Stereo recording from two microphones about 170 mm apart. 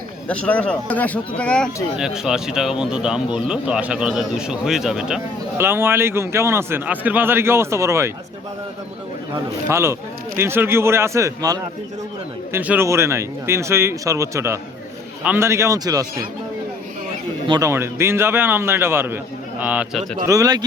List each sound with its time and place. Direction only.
0.3 s speech: 10° left (ahead or behind)
5.5 s a man's voice: 15° right (ahead or behind)
9.6 s a man's voice: 15° right (ahead or behind)
17.5 s a man's voice: 20° right (ahead or behind)
20.2 s speech: 20° right (ahead or behind)